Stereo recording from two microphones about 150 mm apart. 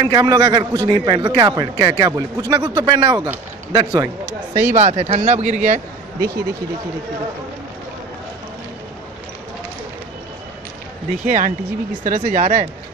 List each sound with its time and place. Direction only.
0.0 s a man's voice: 30° right (ahead or behind)
4.6 s speech: 55° right (ahead or behind)
11.2 s speech: 60° right (ahead or behind)